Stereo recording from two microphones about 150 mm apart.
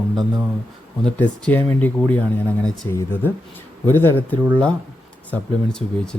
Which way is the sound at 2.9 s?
15° left (ahead or behind).